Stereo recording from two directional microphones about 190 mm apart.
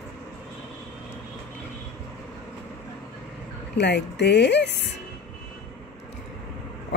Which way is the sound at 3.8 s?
65° left (ahead or behind).